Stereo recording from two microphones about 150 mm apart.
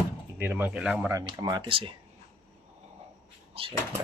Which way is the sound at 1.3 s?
30° right (ahead or behind).